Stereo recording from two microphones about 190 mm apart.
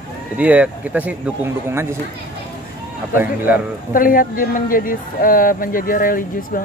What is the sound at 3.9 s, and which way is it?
A woman's voice, 50° left (ahead or behind).